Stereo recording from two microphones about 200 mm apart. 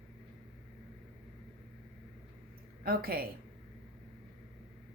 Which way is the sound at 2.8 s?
50° right (ahead or behind).